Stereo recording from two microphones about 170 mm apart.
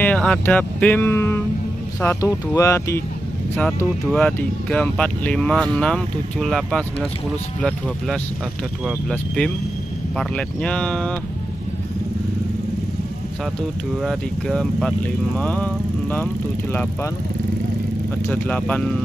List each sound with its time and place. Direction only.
0.0 s speech: 5° left (ahead or behind)
3.5 s speech: 5° left (ahead or behind)
9.1 s speech: 5° left (ahead or behind)
14.0 s speech: centre (ahead or behind)
18.3 s speech: 5° left (ahead or behind)